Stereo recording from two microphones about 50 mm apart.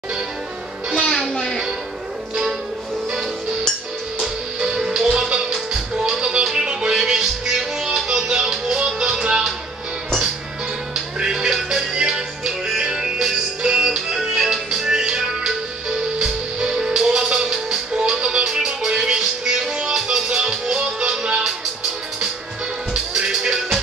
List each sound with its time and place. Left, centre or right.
0.9 s music: centre
4.6 s music: centre
11.1 s music: centre
23.1 s music: centre